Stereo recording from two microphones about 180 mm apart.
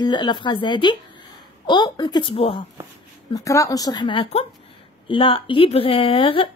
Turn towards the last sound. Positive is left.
turn(degrees=30)  # may be behind; listen again after turning